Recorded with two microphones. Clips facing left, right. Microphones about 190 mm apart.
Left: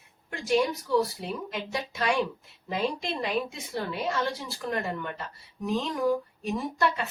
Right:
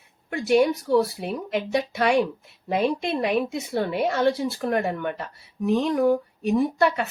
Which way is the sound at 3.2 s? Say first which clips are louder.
Right 4 dB; 60° right (ahead or behind).